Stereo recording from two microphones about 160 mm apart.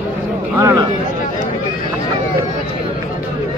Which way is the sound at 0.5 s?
15° right (ahead or behind).